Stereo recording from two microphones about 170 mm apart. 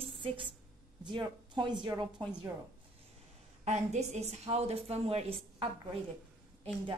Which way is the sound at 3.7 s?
40° right (ahead or behind).